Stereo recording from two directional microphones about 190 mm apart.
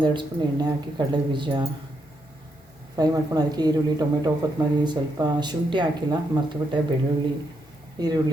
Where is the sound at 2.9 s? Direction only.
20° right (ahead or behind).